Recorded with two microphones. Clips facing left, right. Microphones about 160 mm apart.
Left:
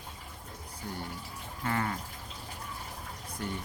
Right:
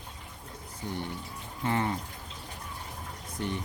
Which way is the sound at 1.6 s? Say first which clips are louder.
Right 3 dB; 20° right (ahead or behind).